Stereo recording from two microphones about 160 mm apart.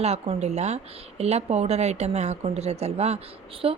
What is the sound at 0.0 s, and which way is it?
Speech, 40° right (ahead or behind).